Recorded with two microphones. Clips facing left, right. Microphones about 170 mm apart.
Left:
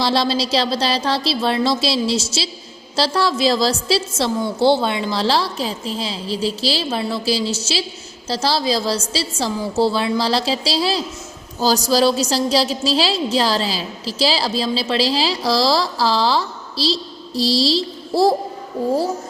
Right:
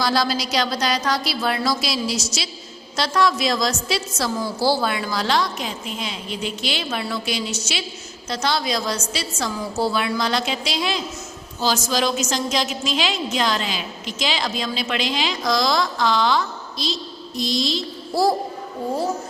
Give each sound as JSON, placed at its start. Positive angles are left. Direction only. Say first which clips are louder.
{"t": 0.0, "sound": "a woman's voice", "louder": "left 3 dB", "side_deg": 25}